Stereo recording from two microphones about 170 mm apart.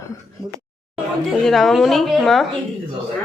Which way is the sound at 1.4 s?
Centre (ahead or behind).